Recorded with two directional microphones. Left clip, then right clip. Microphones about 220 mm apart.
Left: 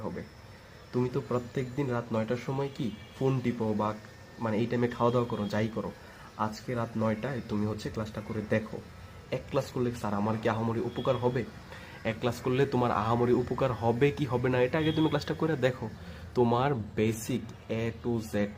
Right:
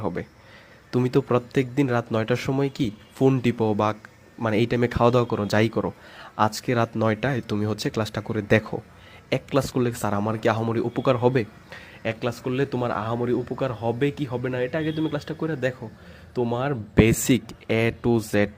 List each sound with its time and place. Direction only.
0.9 s a man's voice: 40° right (ahead or behind); by 16.7 s 10° right (ahead or behind)
16.9 s a man's voice: 30° right (ahead or behind)